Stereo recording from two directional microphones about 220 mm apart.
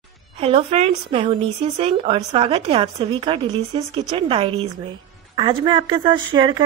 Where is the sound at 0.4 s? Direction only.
25° right (ahead or behind).